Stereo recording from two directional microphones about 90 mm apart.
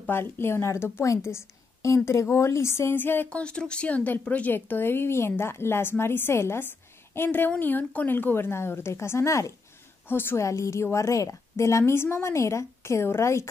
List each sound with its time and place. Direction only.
0.0 s speech: 25° left (ahead or behind)
3.3 s a woman's voice: 10° left (ahead or behind); by 13.5 s 30° left (ahead or behind)